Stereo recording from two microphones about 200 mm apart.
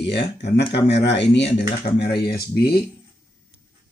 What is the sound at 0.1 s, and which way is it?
Speech, 60° left (ahead or behind).